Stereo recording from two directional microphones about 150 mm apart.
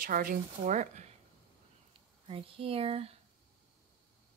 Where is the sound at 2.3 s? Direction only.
40° right (ahead or behind).